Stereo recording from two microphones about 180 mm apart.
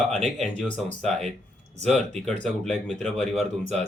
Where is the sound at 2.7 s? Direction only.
40° right (ahead or behind).